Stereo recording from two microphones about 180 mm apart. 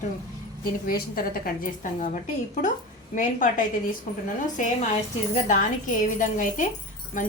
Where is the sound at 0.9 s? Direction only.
55° left (ahead or behind).